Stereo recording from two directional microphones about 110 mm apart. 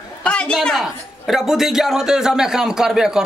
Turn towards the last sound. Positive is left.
turn(degrees=-5)  # may be behind; listen again after turning